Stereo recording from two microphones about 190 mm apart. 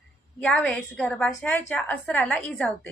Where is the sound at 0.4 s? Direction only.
5° left (ahead or behind).